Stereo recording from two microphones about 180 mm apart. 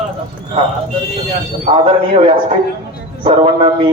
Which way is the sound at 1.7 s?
30° right (ahead or behind).